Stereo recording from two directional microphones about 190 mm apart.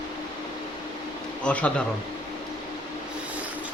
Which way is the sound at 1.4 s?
5° left (ahead or behind).